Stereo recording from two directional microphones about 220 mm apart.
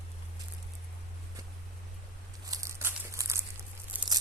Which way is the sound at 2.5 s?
15° right (ahead or behind).